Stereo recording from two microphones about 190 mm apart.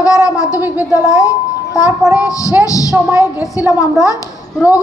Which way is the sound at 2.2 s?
15° left (ahead or behind).